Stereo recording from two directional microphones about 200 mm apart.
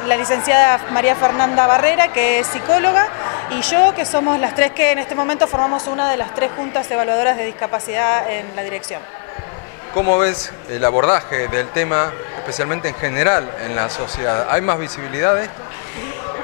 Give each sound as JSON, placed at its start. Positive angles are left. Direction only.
{"t": 0.1, "sound": "a woman's voice", "side_deg": 25}
{"t": 9.9, "sound": "a woman's voice", "side_deg": 25}